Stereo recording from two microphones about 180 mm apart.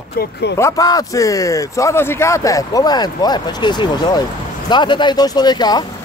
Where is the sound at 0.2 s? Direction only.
70° left (ahead or behind).